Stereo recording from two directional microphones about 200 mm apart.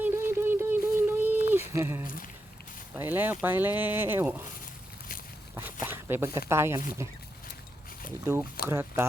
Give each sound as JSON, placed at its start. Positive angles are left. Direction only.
{"t": 0.0, "sound": "a sound", "side_deg": -10}
{"t": 2.0, "sound": "speech", "side_deg": 45}
{"t": 2.9, "sound": "speech", "side_deg": -10}
{"t": 5.8, "sound": "speech", "side_deg": -10}
{"t": 8.2, "sound": "speech", "side_deg": -10}